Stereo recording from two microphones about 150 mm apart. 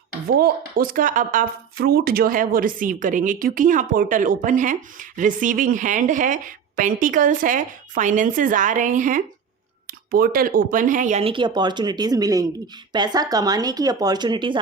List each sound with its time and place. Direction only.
0.3 s speech: 85° right; by 9.2 s 60° right (ahead or behind)
10.1 s speech: 75° right (ahead or behind); by 11.2 s 55° right (ahead or behind)
11.2 s speech: 35° right (ahead or behind)